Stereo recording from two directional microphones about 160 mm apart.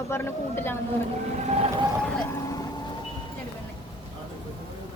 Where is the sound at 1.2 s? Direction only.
40° right (ahead or behind).